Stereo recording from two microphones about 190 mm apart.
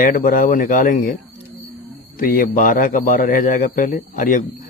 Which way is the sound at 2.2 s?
45° left (ahead or behind).